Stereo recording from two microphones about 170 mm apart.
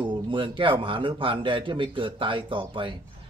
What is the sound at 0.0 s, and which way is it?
A man's voice, 30° right (ahead or behind).